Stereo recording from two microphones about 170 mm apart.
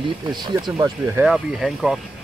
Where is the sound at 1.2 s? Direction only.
5° right (ahead or behind).